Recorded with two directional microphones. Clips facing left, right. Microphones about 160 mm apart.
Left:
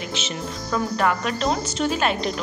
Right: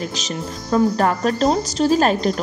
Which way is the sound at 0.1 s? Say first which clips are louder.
Right 2 dB; 35° right (ahead or behind).